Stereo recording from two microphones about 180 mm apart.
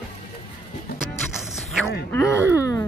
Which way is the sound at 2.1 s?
15° left (ahead or behind).